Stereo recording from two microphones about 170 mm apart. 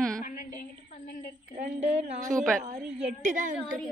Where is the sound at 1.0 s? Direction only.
55° left (ahead or behind).